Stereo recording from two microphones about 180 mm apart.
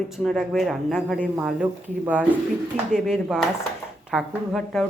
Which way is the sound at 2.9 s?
5° right (ahead or behind).